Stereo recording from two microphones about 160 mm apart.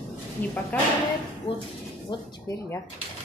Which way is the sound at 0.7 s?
10° left (ahead or behind).